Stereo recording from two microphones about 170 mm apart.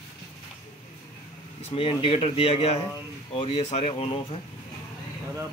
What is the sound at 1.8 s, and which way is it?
Speech, 35° left (ahead or behind).